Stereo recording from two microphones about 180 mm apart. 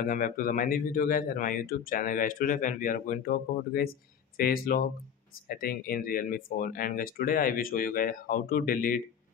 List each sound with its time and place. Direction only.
0.1 s speech: 50° left (ahead or behind)